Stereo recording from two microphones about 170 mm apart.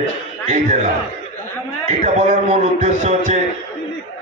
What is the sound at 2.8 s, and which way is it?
Speech, 45° right (ahead or behind).